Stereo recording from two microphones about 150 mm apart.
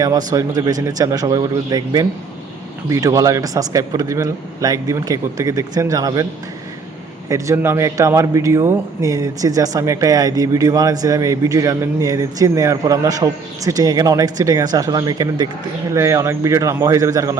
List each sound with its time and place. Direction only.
0.0 s a man's voice: 25° right (ahead or behind)
7.3 s a man's voice: 20° right (ahead or behind)